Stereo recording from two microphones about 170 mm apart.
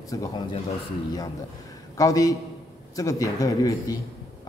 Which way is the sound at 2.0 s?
20° left (ahead or behind).